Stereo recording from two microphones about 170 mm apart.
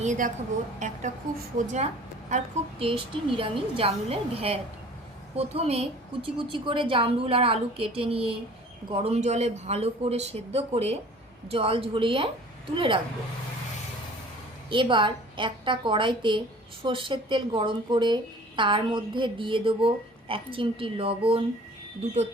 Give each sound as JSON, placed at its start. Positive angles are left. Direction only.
{"t": 0.0, "sound": "a woman's voice", "side_deg": -45}
{"t": 14.7, "sound": "speech", "side_deg": -30}